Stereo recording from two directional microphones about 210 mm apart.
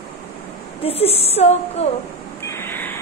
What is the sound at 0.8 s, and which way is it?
A woman's voice, 30° left (ahead or behind).